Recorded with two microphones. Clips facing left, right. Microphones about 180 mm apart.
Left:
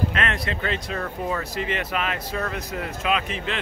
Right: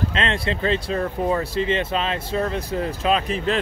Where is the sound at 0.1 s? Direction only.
25° right (ahead or behind).